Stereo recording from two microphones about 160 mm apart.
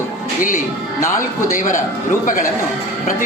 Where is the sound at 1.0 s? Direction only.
55° left (ahead or behind).